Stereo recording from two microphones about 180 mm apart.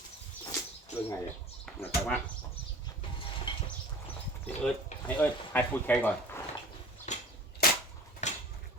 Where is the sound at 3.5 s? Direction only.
30° left (ahead or behind).